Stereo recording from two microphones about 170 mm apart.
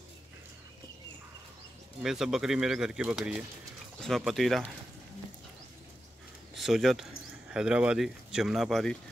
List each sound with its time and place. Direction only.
2.0 s speech: 5° right (ahead or behind)
6.5 s speech: centre (ahead or behind)